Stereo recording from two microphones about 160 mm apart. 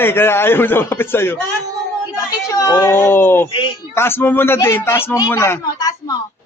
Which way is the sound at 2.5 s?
20° left (ahead or behind).